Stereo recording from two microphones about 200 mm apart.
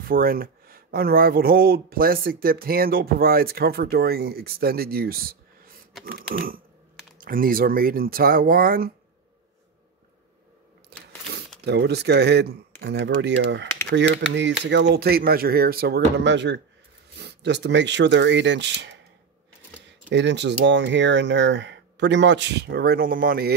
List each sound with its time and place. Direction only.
0.0 s speech: 45° right (ahead or behind)
10.9 s a sound: 55° right (ahead or behind)
11.6 s speech: 55° right (ahead or behind)
20.1 s speech: 60° right (ahead or behind)